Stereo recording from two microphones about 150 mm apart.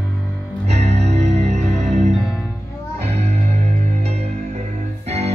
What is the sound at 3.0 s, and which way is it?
Music, 45° right (ahead or behind).